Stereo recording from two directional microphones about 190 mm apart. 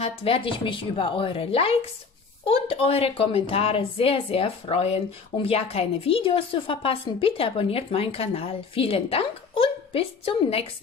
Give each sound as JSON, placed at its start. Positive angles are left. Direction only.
{"t": 0.0, "sound": "speech", "side_deg": 30}